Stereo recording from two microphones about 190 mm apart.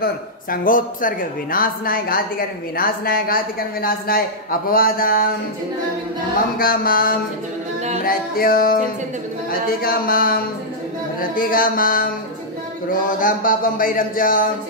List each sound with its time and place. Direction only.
0.0 s speech: 45° left (ahead or behind)
6.6 s speech: 50° left (ahead or behind)
13.2 s speech: 45° left (ahead or behind)